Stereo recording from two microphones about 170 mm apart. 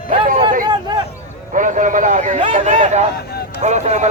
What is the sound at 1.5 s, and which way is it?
A man's voice, 50° right (ahead or behind).